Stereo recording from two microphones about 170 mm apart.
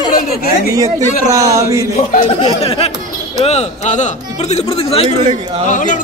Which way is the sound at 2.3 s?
35° left (ahead or behind).